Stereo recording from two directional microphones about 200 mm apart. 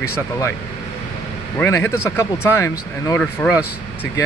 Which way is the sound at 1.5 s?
10° left (ahead or behind).